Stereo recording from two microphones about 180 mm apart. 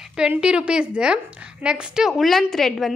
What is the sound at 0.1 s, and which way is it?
A woman's voice, 5° right (ahead or behind).